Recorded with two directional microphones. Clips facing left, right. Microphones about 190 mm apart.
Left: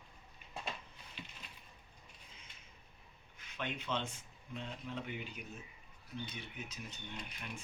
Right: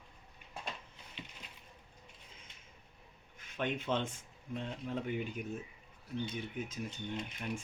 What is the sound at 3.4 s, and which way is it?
Speech, 50° right (ahead or behind).